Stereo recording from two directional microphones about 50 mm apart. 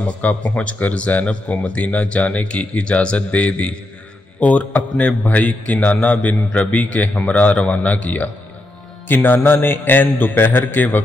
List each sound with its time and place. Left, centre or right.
0.0 s a man's voice: left
9.0 s a man's voice: left